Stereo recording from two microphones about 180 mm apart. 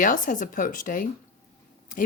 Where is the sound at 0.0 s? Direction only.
45° left (ahead or behind).